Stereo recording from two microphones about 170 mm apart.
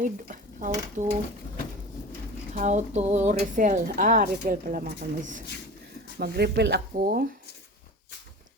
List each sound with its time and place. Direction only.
0.0 s dishes: 50° right (ahead or behind)
2.6 s a woman's voice: 45° right (ahead or behind)
6.1 s speech: 70° right (ahead or behind)